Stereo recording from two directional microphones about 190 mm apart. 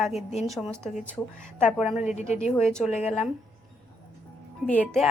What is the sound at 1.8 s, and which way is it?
Speech, 5° right (ahead or behind).